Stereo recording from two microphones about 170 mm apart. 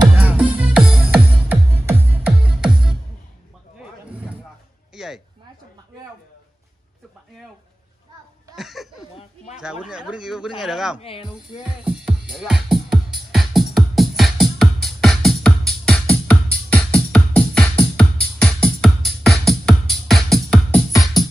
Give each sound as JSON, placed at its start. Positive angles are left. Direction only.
{"t": 0.2, "sound": "music", "side_deg": -5}
{"t": 4.9, "sound": "a sound", "side_deg": -5}
{"t": 8.5, "sound": "a sound", "side_deg": 0}
{"t": 9.6, "sound": "speech", "side_deg": -5}
{"t": 11.0, "sound": "speech", "side_deg": 35}
{"t": 11.2, "sound": "music", "side_deg": -5}